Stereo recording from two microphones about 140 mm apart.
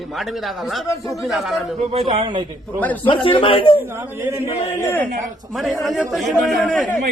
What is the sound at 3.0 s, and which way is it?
Speech, 40° left (ahead or behind).